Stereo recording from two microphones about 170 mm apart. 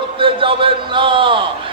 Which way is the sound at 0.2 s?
30° right (ahead or behind).